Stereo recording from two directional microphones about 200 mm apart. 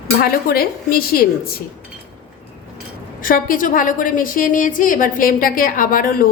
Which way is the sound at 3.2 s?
45° left (ahead or behind).